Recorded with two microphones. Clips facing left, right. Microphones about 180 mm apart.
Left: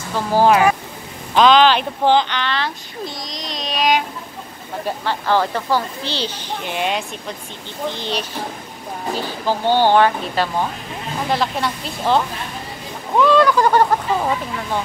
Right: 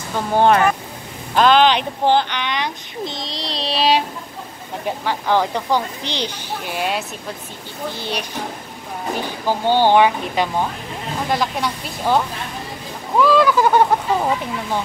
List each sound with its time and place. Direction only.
0.3 s speech: 5° left (ahead or behind)
1.3 s speech: 10° right (ahead or behind); by 4.0 s 30° right (ahead or behind)
5.0 s speech: 10° right (ahead or behind)
9.5 s speech: 15° right (ahead or behind)
11.2 s speech: centre (ahead or behind)
13.2 s speech: 5° right (ahead or behind)